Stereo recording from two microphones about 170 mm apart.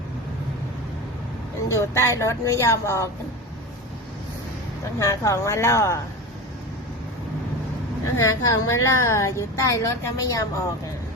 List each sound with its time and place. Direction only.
1.7 s speech: 15° left (ahead or behind)
4.9 s speech: 20° left (ahead or behind)
8.1 s speech: 20° left (ahead or behind)